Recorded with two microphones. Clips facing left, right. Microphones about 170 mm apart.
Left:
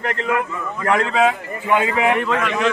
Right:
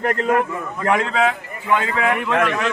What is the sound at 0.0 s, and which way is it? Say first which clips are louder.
Speech: right 3 dB; 45° right (ahead or behind).